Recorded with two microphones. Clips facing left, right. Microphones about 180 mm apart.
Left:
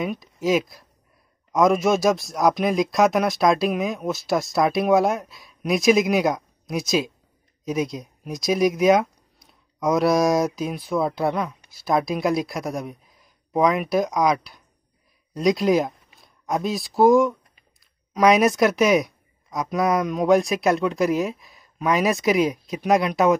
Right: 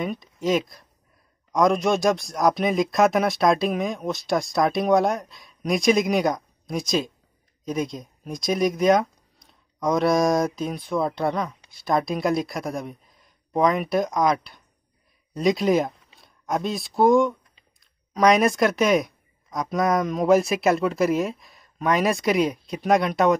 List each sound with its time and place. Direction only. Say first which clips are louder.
0.0 s speech: left 1 dB; 5° left (ahead or behind)